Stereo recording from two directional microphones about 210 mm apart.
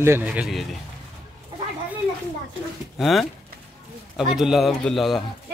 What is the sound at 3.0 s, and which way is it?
Speech, centre (ahead or behind).